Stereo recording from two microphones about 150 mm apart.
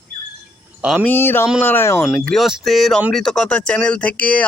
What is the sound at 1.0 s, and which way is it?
Speech, 15° left (ahead or behind).